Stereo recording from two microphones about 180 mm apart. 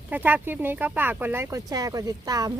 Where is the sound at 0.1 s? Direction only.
10° right (ahead or behind).